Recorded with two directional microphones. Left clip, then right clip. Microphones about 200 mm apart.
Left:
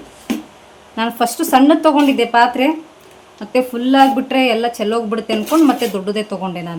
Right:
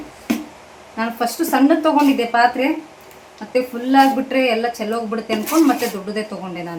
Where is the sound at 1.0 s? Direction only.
55° left (ahead or behind).